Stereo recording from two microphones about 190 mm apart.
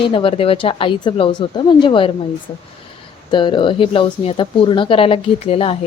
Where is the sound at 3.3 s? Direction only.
25° left (ahead or behind).